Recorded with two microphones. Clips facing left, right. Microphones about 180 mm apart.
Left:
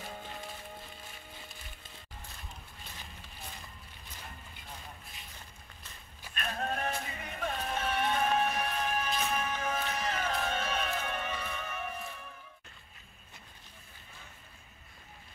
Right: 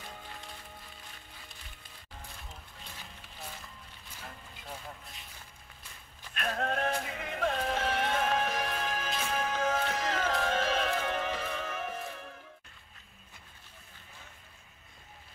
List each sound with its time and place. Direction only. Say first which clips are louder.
6.3 s music: right 3 dB; 85° right